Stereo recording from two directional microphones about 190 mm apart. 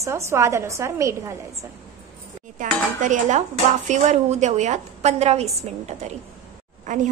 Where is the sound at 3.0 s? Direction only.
40° right (ahead or behind).